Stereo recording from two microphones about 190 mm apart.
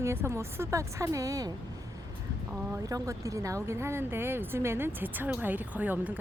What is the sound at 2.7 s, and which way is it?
Speech, 15° right (ahead or behind).